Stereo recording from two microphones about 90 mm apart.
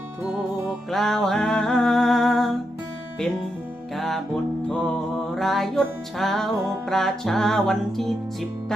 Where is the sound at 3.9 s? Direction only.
5° left (ahead or behind).